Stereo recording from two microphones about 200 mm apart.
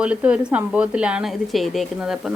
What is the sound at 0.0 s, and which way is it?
A woman's voice, 5° right (ahead or behind).